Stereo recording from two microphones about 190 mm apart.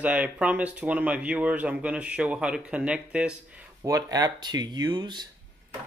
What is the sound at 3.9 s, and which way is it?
Speech, 20° right (ahead or behind).